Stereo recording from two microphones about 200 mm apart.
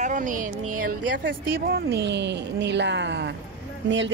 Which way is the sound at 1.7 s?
55° right (ahead or behind).